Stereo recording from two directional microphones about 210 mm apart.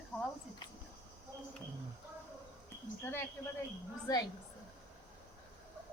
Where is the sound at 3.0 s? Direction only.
10° left (ahead or behind).